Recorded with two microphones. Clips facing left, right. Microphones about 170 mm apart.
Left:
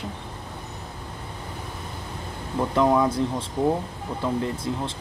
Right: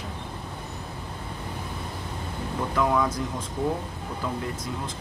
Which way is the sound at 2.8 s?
30° left (ahead or behind).